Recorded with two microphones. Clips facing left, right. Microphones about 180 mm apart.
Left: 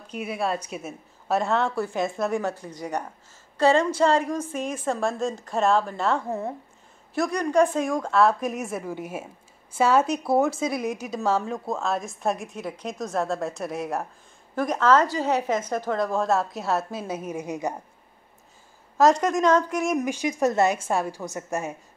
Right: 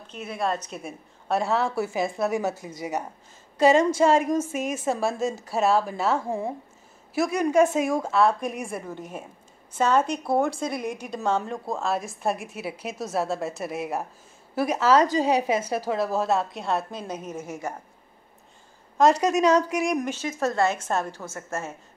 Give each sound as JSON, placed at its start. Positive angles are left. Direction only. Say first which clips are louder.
{"t": 0.1, "sound": "a woman's voice", "louder": "left 1 dB", "side_deg": 10}
{"t": 18.9, "sound": "a woman's voice", "louder": "left 1 dB", "side_deg": 0}
{"t": 19.2, "sound": "a woman's voice", "louder": "right 1 dB", "side_deg": -10}
{"t": 20.1, "sound": "a woman's voice", "louder": "left 3 dB", "side_deg": 15}